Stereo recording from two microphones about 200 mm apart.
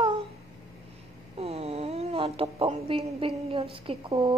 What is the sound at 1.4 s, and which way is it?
Speech, 30° right (ahead or behind).